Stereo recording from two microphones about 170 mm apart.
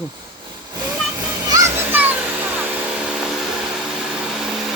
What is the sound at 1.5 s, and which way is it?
Vehicle, 20° right (ahead or behind).